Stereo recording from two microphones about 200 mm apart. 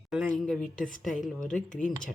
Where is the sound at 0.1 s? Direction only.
Centre (ahead or behind).